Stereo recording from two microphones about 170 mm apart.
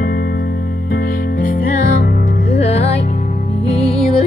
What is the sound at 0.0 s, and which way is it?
Music, 60° left (ahead or behind).